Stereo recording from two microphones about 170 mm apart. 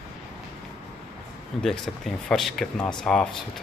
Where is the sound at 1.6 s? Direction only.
Centre (ahead or behind).